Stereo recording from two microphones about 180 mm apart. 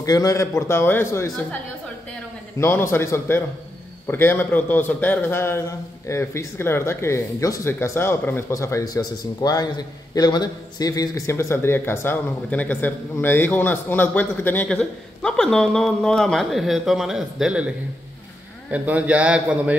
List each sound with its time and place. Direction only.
0.0 s speech: 20° left (ahead or behind)
2.6 s a man's voice: 15° left (ahead or behind); by 19.8 s 5° right (ahead or behind)